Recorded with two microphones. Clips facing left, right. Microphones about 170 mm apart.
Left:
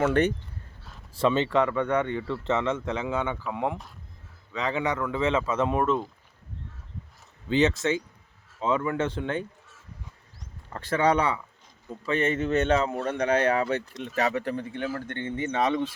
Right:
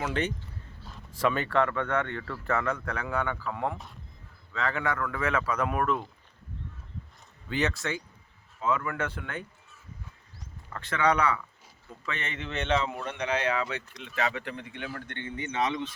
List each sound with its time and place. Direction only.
0.0 s speech: 60° left (ahead or behind)
1.1 s speech: 25° left (ahead or behind)
2.2 s speech: 25° left (ahead or behind)
7.5 s speech: 20° left (ahead or behind)
10.7 s a man's voice: 35° left (ahead or behind)